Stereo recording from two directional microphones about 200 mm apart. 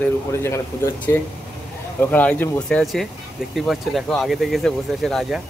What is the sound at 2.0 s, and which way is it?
Speech, 10° left (ahead or behind).